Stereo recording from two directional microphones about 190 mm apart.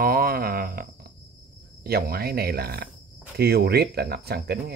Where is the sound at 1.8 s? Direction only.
55° right (ahead or behind).